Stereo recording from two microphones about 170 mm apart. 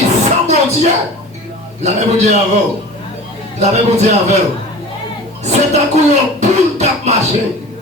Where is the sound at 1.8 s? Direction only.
40° right (ahead or behind).